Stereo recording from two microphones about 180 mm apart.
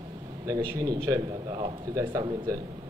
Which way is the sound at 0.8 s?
20° right (ahead or behind).